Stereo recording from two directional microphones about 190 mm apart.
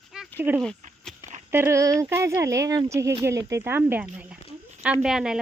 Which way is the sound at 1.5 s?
15° right (ahead or behind).